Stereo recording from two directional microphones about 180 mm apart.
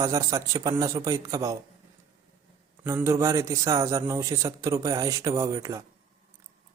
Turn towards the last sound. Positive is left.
turn(degrees=-20)  # may be behind; listen again after turning